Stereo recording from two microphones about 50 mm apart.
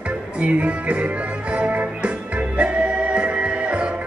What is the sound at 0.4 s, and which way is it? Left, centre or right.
Music, right.